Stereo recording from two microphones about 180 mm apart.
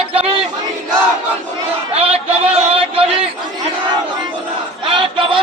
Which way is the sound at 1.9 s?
35° right (ahead or behind).